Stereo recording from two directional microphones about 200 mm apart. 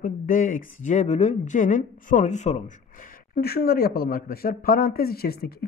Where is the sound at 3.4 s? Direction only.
50° left (ahead or behind).